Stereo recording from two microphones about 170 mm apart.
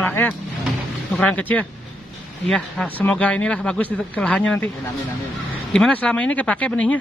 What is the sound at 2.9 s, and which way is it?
Speech, 10° left (ahead or behind).